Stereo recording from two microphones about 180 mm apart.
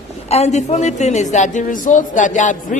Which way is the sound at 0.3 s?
40° left (ahead or behind).